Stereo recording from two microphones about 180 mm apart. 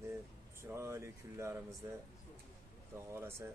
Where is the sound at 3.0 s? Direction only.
15° right (ahead or behind).